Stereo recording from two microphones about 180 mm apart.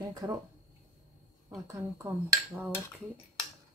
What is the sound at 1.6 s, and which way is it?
Cutlery, 15° right (ahead or behind).